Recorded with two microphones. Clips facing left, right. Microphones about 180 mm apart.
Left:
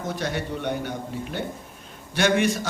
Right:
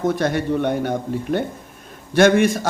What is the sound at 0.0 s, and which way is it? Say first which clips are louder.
Speech: right 9 dB; 55° right (ahead or behind).